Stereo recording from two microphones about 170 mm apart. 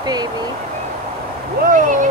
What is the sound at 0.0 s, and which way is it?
Speech, 25° right (ahead or behind).